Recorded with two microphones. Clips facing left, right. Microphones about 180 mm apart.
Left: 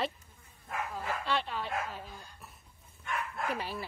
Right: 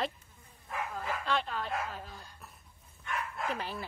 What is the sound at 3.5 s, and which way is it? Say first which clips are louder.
Speech: left 1 dB; 10° left (ahead or behind).